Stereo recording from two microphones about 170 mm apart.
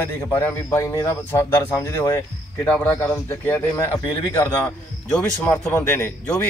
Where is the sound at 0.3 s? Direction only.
10° left (ahead or behind).